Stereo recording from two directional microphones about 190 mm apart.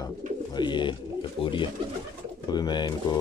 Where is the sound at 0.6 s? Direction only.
25° left (ahead or behind).